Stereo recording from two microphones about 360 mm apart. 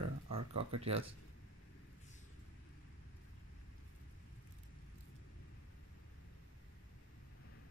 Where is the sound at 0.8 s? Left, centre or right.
Centre.